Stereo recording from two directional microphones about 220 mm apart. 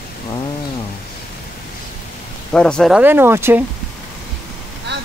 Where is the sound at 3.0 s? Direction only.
10° right (ahead or behind).